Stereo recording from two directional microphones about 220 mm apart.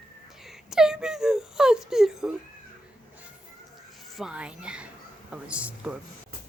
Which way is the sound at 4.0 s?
Centre (ahead or behind).